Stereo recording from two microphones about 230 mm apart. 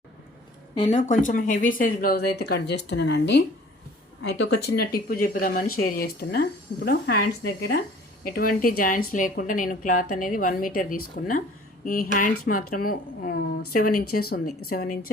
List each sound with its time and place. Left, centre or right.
0.8 s speech: left